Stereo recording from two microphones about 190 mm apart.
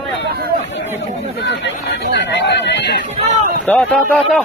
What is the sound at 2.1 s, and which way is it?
Chatter, 70° left (ahead or behind).